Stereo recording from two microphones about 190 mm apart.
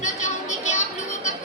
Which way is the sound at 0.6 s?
35° left (ahead or behind).